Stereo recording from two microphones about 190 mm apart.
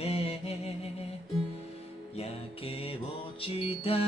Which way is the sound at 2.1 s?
30° left (ahead or behind).